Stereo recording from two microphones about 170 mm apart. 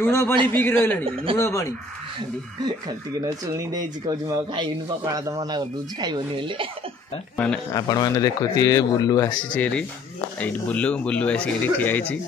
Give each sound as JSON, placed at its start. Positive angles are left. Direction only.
{"t": 0.0, "sound": "speech", "side_deg": 15}
{"t": 3.2, "sound": "speech", "side_deg": -20}
{"t": 7.3, "sound": "speech", "side_deg": 5}
{"t": 7.7, "sound": "speech", "side_deg": 20}
{"t": 9.5, "sound": "speech", "side_deg": 5}